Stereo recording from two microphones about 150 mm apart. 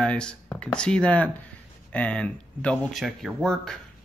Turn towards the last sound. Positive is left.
turn(degrees=5)  # may be behind; listen again after turning